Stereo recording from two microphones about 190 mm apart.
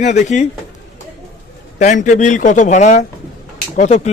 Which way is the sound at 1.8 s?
40° left (ahead or behind).